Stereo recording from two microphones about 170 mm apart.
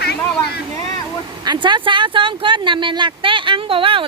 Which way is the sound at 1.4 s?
25° right (ahead or behind).